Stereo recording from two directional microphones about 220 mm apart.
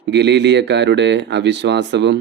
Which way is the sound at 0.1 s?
50° right (ahead or behind).